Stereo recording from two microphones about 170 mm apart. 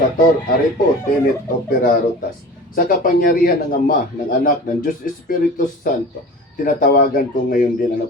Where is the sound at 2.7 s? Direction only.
55° left (ahead or behind).